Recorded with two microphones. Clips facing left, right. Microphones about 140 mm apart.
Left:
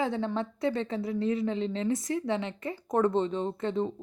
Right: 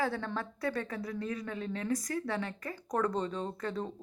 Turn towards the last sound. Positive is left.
turn(degrees=20)  # may be behind; listen again after turning